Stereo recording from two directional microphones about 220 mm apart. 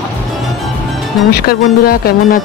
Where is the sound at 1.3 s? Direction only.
45° left (ahead or behind).